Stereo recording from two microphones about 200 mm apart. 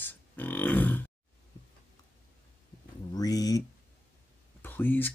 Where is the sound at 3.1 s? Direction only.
20° left (ahead or behind).